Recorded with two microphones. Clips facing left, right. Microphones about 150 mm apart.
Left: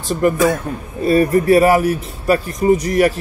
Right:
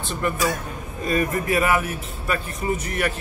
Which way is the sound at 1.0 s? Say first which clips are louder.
Left 10 dB; 35° left (ahead or behind).